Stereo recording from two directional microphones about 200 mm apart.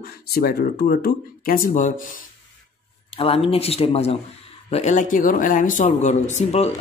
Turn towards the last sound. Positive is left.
turn(degrees=30)  # may be behind; listen again after turning